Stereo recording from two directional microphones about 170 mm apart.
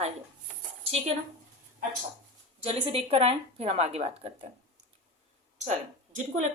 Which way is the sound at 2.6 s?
35° right (ahead or behind).